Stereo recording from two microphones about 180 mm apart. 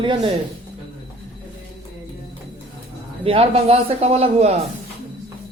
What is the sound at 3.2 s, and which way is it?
Speech, 30° right (ahead or behind).